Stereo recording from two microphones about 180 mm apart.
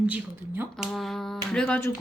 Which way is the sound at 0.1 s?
10° right (ahead or behind).